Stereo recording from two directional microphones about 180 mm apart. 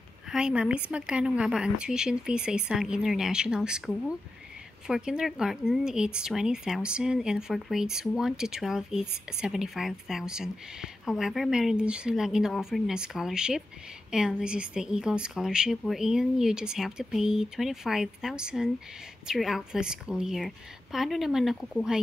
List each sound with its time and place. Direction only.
0.3 s speech: 5° right (ahead or behind)